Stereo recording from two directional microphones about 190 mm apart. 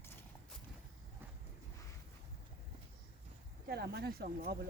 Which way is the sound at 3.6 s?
55° right (ahead or behind).